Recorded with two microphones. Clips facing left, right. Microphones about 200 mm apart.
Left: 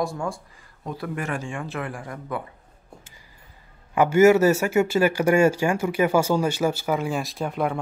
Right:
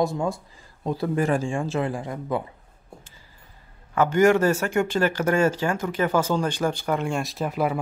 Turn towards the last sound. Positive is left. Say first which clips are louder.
# right 1 dB
turn(degrees=-5)  # may be behind; listen again after turning